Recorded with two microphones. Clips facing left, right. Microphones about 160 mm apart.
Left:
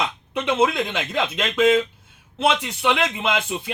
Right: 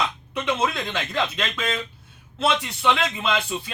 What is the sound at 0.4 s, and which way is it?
Speech, 20° left (ahead or behind).